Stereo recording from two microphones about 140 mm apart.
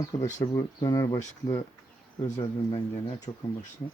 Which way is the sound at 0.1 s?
25° left (ahead or behind).